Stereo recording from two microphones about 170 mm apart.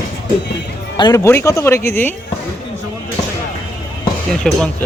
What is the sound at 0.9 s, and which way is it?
Speech, 25° left (ahead or behind).